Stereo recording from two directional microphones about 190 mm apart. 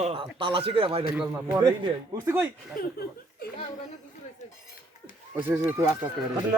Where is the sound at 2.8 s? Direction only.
50° left (ahead or behind).